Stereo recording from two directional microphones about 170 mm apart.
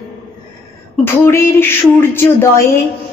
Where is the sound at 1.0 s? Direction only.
15° left (ahead or behind).